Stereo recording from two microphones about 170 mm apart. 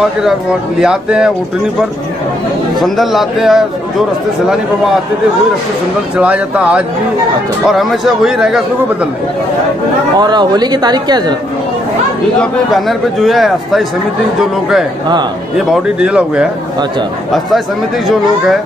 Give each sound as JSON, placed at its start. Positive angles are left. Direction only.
{"t": 0.0, "sound": "a man's voice", "side_deg": -5}
{"t": 2.8, "sound": "a man's voice", "side_deg": 0}
{"t": 6.1, "sound": "a man's voice", "side_deg": -10}
{"t": 10.1, "sound": "speech", "side_deg": -25}
{"t": 12.4, "sound": "a man's voice", "side_deg": 0}